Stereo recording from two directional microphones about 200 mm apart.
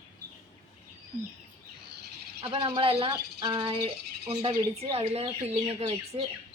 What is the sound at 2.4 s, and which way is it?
Speech, 25° right (ahead or behind).